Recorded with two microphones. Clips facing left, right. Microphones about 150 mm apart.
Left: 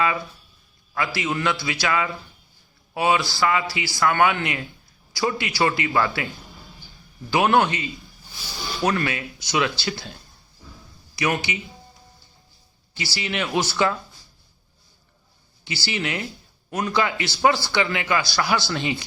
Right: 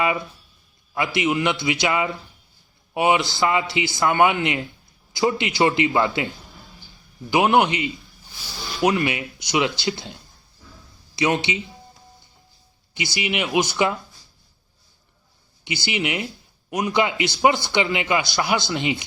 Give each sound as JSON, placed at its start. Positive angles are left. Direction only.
{"t": 0.9, "sound": "speech", "side_deg": -20}
{"t": 7.3, "sound": "speech", "side_deg": -15}
{"t": 12.9, "sound": "speech", "side_deg": -20}
{"t": 15.6, "sound": "speech", "side_deg": -20}